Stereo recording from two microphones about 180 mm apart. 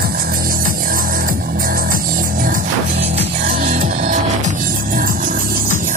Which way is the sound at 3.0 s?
35° right (ahead or behind).